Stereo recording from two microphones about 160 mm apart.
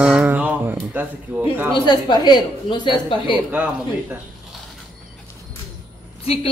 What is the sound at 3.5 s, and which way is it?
Speech, 10° right (ahead or behind).